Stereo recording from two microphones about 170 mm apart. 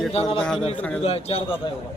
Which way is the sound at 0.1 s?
35° left (ahead or behind).